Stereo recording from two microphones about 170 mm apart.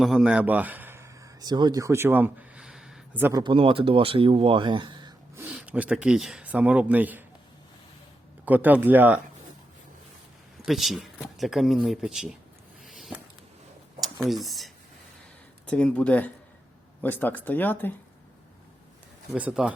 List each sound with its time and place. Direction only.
0.0 s speech: 5° right (ahead or behind)
3.3 s speech: 30° right (ahead or behind)
5.4 s speech: 10° right (ahead or behind)
8.4 s speech: 10° right (ahead or behind)
10.7 s speech: centre (ahead or behind)
12.8 s a sound: centre (ahead or behind)
14.3 s speech: centre (ahead or behind)
19.3 s speech: 5° right (ahead or behind)